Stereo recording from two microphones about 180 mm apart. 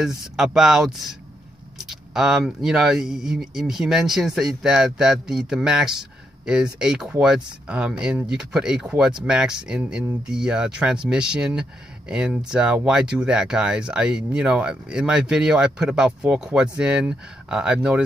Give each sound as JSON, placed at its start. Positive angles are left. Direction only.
{"t": 0.0, "sound": "speech", "side_deg": 0}